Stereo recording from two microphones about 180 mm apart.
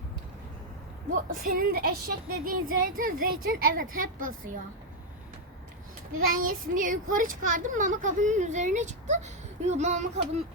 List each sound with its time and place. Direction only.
1.3 s a child's voice: 50° right (ahead or behind)
6.1 s a child's voice: 50° right (ahead or behind)